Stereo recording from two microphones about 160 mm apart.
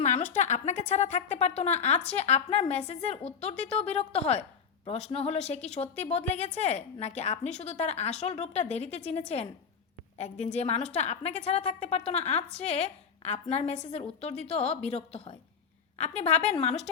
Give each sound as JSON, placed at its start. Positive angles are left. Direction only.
{"t": 0.0, "sound": "a woman's voice", "side_deg": 50}